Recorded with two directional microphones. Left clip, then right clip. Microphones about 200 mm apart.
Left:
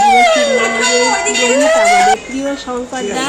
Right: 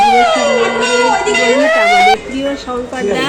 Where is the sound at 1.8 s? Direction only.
5° left (ahead or behind).